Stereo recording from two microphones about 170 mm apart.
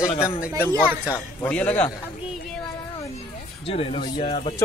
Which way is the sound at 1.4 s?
10° left (ahead or behind).